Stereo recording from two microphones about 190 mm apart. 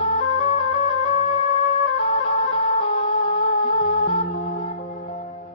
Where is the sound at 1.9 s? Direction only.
30° left (ahead or behind).